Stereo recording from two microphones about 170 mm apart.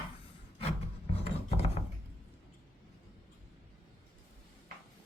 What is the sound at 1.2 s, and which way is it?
Filing, 35° left (ahead or behind).